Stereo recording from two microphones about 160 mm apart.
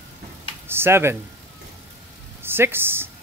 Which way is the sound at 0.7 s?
15° right (ahead or behind).